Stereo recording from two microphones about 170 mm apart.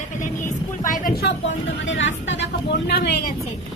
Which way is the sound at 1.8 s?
90° left.